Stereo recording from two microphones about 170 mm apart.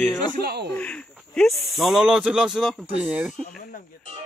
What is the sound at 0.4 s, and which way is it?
Speech, 75° right (ahead or behind).